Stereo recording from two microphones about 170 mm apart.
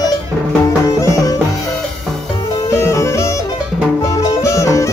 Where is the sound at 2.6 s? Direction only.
15° left (ahead or behind).